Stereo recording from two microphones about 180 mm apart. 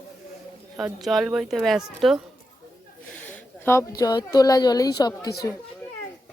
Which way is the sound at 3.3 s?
15° left (ahead or behind).